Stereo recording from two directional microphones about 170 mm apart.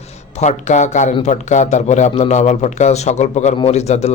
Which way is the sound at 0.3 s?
45° left (ahead or behind).